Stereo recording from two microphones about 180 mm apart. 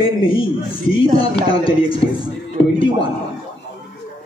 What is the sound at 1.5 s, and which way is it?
Speech, 30° left (ahead or behind).